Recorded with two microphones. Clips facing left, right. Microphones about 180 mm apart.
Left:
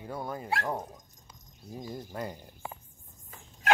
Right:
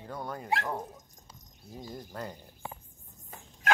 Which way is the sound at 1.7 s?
10° left (ahead or behind).